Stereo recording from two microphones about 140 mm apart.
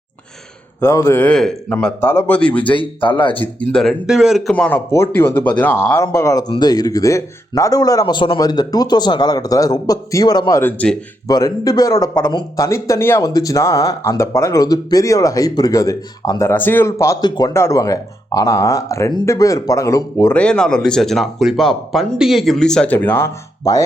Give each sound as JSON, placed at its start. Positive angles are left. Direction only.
{"t": 0.8, "sound": "speech", "side_deg": 20}
{"t": 1.2, "sound": "a man's voice", "side_deg": 5}
{"t": 2.7, "sound": "speech", "side_deg": 35}
{"t": 3.3, "sound": "speech", "side_deg": 10}
{"t": 4.5, "sound": "speech", "side_deg": 10}
{"t": 10.6, "sound": "a man's voice", "side_deg": 10}
{"t": 11.3, "sound": "speech", "side_deg": 25}
{"t": 12.3, "sound": "speech", "side_deg": 30}
{"t": 12.6, "sound": "speech", "side_deg": 20}
{"t": 20.3, "sound": "speech", "side_deg": 5}